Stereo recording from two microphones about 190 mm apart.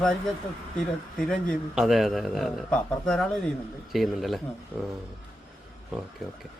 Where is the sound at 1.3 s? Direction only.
Centre (ahead or behind).